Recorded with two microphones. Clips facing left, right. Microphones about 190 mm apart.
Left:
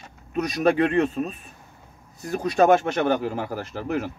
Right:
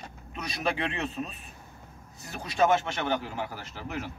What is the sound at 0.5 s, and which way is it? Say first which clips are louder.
Speech: left 11 dB; 45° left (ahead or behind).